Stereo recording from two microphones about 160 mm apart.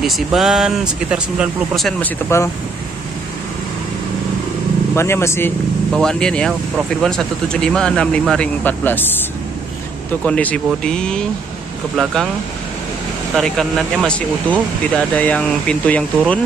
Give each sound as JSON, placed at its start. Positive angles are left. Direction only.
{"t": 0.0, "sound": "speech", "side_deg": 0}
{"t": 4.9, "sound": "speech", "side_deg": 15}
{"t": 5.9, "sound": "speech", "side_deg": 5}
{"t": 10.2, "sound": "speech", "side_deg": 5}
{"t": 13.4, "sound": "speech", "side_deg": 0}